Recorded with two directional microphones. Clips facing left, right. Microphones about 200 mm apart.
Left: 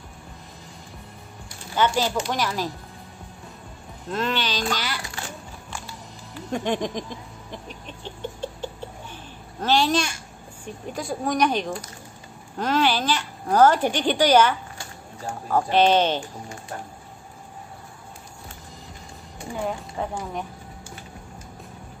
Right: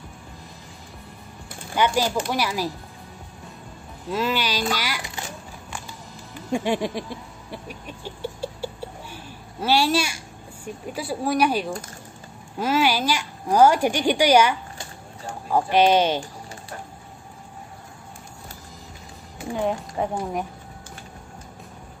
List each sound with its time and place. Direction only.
1.8 s speech: 10° right (ahead or behind)
4.1 s speech: 5° right (ahead or behind)
6.5 s chicken: 10° right (ahead or behind)
9.1 s a woman's voice: 10° right (ahead or behind)
20.0 s speech: 20° right (ahead or behind)